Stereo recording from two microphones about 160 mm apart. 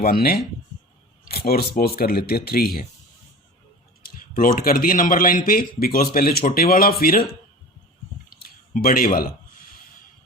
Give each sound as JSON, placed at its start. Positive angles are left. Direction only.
{"t": 0.0, "sound": "speech", "side_deg": 70}
{"t": 4.0, "sound": "speech", "side_deg": 60}
{"t": 8.4, "sound": "a sound", "side_deg": 60}